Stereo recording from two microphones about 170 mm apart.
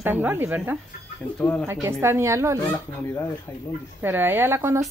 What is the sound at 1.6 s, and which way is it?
Speech, 15° right (ahead or behind).